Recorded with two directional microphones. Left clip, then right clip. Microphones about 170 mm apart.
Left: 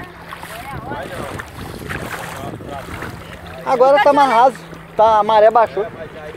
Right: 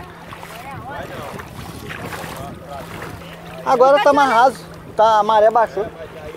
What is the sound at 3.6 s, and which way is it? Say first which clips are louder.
Speech: even; 20° right (ahead or behind).